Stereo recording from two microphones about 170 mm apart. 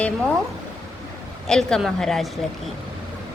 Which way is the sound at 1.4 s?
5° left (ahead or behind).